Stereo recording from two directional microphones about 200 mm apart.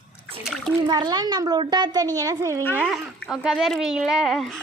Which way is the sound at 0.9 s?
20° right (ahead or behind).